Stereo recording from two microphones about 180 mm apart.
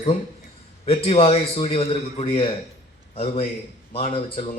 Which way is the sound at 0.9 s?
30° left (ahead or behind).